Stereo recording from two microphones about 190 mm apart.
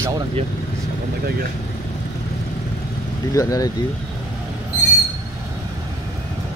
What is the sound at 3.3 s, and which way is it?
Speech, 20° left (ahead or behind).